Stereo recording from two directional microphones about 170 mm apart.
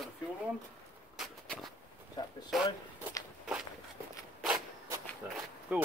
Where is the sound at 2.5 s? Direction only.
Centre (ahead or behind).